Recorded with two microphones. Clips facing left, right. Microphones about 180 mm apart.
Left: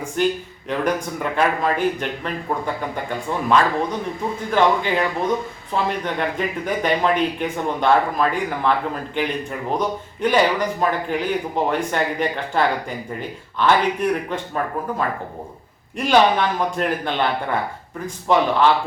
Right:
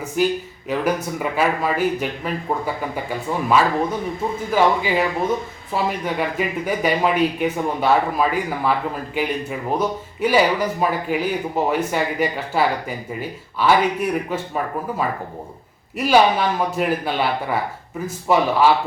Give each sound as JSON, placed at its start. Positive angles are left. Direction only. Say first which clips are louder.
{"t": 0.2, "sound": "speech", "louder": "right 1 dB", "side_deg": -5}